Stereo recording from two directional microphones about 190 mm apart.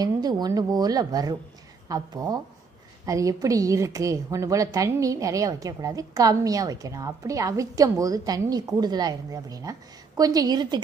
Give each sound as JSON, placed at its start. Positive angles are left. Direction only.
{"t": 0.0, "sound": "a woman's voice", "side_deg": -20}